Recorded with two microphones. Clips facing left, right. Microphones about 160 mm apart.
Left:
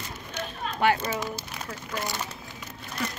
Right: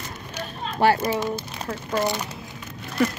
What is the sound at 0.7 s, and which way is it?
Speech, 35° right (ahead or behind).